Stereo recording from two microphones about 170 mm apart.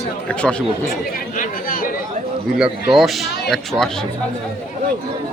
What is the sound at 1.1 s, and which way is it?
Chatter, 55° left (ahead or behind).